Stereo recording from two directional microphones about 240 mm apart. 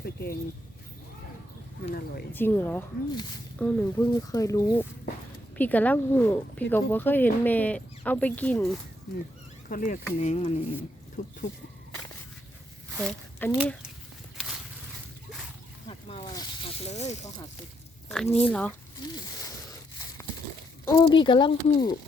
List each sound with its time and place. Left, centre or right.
0.0 s a sound: left
2.3 s speech: centre
9.6 s speech: left
13.0 s speech: centre
15.9 s snake: left
18.1 s speech: centre
20.8 s speech: centre